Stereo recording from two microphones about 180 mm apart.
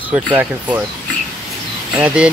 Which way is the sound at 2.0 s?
5° right (ahead or behind).